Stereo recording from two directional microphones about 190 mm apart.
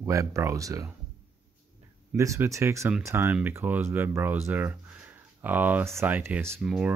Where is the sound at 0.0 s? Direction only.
15° right (ahead or behind).